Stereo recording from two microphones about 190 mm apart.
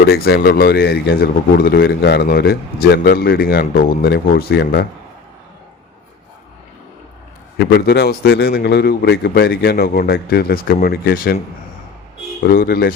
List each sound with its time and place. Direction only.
0.0 s a man's voice: 55° left (ahead or behind)
7.6 s a man's voice: 60° left (ahead or behind)
12.5 s speech: 50° left (ahead or behind)